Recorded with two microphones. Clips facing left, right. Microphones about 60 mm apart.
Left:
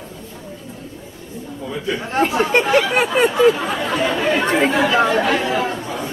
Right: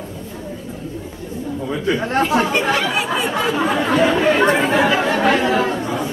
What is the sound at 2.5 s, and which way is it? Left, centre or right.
Chatter, left.